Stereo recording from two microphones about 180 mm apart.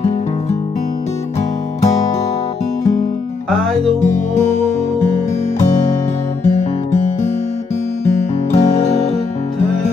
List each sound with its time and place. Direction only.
6.4 s music: 40° left (ahead or behind)
8.5 s music: 40° left (ahead or behind)